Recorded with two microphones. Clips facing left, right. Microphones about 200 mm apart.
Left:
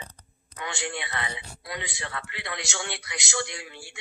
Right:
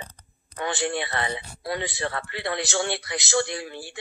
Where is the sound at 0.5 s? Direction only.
50° right (ahead or behind).